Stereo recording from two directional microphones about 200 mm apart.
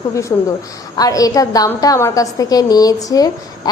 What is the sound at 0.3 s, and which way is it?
A woman's voice, 20° left (ahead or behind).